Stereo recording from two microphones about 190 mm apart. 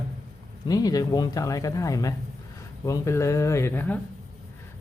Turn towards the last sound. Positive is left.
turn(degrees=10)  # may be behind; listen again after turning